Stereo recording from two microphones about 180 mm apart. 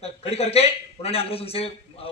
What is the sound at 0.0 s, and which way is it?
A man's voice, 35° left (ahead or behind).